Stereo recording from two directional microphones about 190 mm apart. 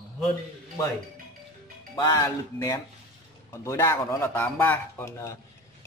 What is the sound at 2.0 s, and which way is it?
Speech, 20° left (ahead or behind).